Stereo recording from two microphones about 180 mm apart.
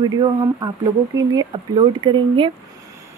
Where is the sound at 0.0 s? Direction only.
25° right (ahead or behind).